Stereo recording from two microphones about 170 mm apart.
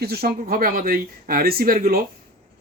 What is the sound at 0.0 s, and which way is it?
Speech, 70° right (ahead or behind).